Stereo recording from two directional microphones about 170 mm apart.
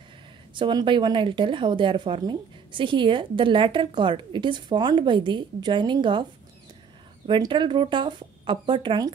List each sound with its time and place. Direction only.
0.6 s speech: 25° right (ahead or behind)
7.2 s speech: 30° right (ahead or behind)